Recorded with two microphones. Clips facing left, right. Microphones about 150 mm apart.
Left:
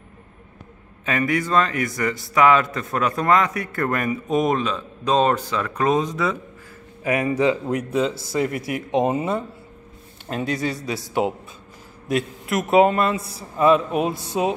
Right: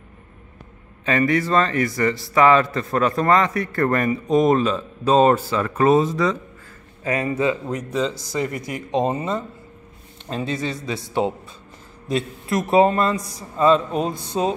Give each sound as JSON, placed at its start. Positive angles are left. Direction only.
{"t": 1.0, "sound": "a man's voice", "side_deg": 0}
{"t": 7.0, "sound": "a man's voice", "side_deg": 15}
{"t": 10.3, "sound": "a man's voice", "side_deg": -25}
{"t": 12.4, "sound": "a man's voice", "side_deg": 0}